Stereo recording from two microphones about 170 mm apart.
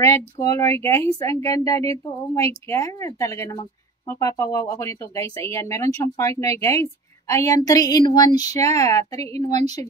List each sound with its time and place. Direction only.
0.0 s a woman's voice: 15° left (ahead or behind)